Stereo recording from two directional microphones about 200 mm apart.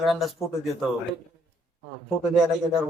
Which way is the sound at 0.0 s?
Centre (ahead or behind).